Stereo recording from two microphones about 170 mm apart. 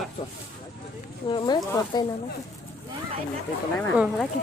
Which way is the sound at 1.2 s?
25° left (ahead or behind).